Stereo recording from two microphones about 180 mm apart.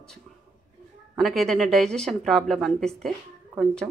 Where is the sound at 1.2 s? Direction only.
Centre (ahead or behind).